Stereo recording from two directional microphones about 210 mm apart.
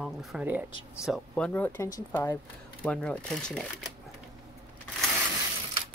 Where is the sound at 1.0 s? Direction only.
5° left (ahead or behind).